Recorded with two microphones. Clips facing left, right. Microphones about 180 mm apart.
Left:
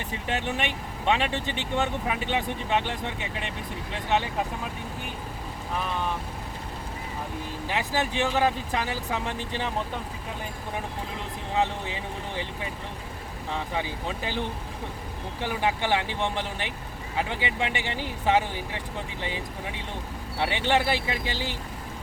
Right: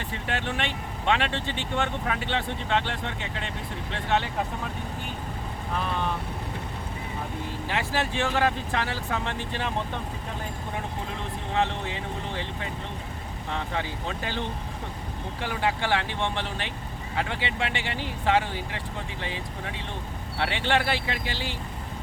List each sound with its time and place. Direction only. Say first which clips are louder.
0.3 s speech: left 1 dB; 15° left (ahead or behind)
7.7 s speech: left 1 dB; 15° left (ahead or behind)
11.5 s speech: even; 15° left (ahead or behind)